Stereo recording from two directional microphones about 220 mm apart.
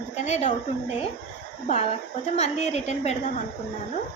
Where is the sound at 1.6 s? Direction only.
30° left (ahead or behind).